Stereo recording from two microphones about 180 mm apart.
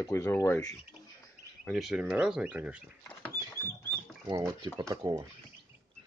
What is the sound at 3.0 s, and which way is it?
Rodents, 15° left (ahead or behind).